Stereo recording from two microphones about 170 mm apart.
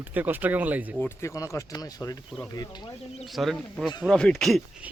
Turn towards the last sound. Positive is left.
turn(degrees=-10)  # may be behind; listen again after turning